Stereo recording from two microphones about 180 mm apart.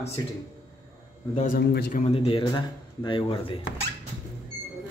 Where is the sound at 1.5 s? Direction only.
65° left (ahead or behind).